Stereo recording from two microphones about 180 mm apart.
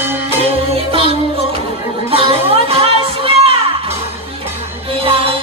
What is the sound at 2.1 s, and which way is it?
Music, 30° right (ahead or behind).